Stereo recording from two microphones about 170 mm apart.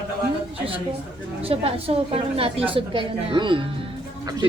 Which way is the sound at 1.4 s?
35° right (ahead or behind).